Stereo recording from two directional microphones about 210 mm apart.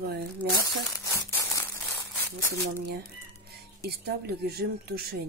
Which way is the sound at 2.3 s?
50° right (ahead or behind).